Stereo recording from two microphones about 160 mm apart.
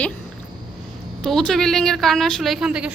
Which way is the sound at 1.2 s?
5° left (ahead or behind).